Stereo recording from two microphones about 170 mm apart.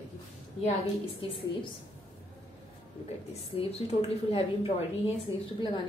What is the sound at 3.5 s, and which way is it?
A woman's voice, 35° left (ahead or behind).